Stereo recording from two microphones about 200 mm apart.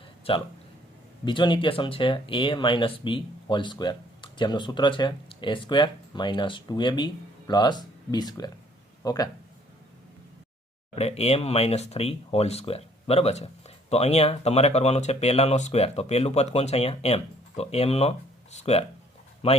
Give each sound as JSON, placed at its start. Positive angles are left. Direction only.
{"t": 0.3, "sound": "speech", "side_deg": 30}
{"t": 10.9, "sound": "speech", "side_deg": 30}